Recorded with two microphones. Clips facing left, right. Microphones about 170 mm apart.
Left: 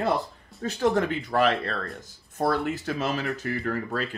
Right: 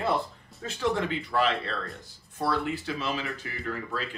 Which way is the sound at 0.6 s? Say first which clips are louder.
Left 5 dB; 45° left (ahead or behind).